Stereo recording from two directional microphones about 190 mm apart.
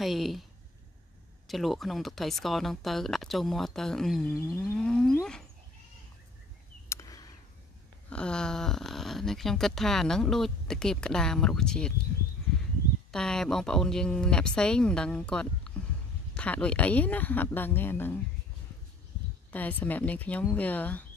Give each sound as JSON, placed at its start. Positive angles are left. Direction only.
{"t": 0.0, "sound": "speech", "side_deg": 0}
{"t": 1.5, "sound": "speech", "side_deg": 0}
{"t": 6.9, "sound": "a sound", "side_deg": 20}
{"t": 8.1, "sound": "speech", "side_deg": 5}
{"t": 13.1, "sound": "speech", "side_deg": 5}
{"t": 19.5, "sound": "speech", "side_deg": 10}